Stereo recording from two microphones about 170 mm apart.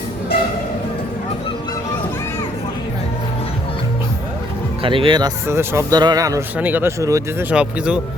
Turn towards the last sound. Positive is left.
turn(degrees=-5)  # may be behind; listen again after turning